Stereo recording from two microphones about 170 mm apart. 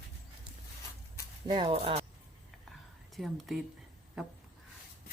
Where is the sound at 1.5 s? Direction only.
30° right (ahead or behind).